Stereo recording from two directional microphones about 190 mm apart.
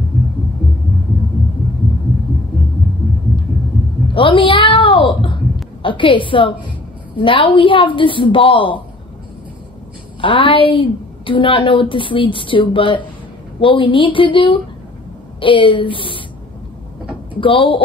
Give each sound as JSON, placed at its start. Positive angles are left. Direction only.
{"t": 4.1, "sound": "a sound", "side_deg": 25}
{"t": 7.2, "sound": "a woman's voice", "side_deg": 25}
{"t": 10.2, "sound": "a woman's voice", "side_deg": 25}
{"t": 17.4, "sound": "a woman's voice", "side_deg": 30}